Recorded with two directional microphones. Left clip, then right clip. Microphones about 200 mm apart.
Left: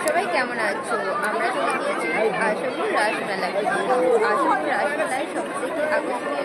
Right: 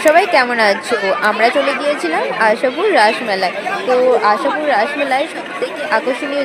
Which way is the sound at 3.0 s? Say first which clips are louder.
Right 10 dB; 40° right (ahead or behind).